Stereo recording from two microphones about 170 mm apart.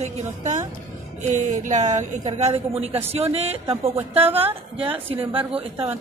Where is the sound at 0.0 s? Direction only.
45° right (ahead or behind).